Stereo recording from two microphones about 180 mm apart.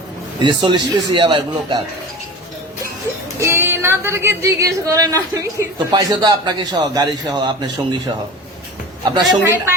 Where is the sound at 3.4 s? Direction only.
15° right (ahead or behind).